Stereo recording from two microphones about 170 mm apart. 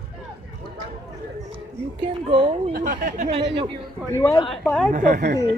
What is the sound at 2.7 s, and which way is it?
Speech, 55° right (ahead or behind).